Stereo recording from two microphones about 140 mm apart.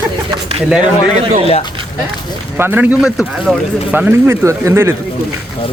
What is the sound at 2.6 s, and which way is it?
A man's voice, 15° right (ahead or behind).